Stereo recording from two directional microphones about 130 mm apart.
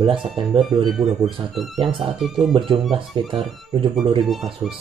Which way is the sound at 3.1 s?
40° right (ahead or behind).